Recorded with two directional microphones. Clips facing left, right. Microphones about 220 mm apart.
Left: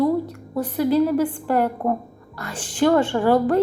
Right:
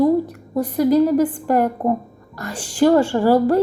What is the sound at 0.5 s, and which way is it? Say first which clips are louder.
Speech: right 4 dB; 10° right (ahead or behind).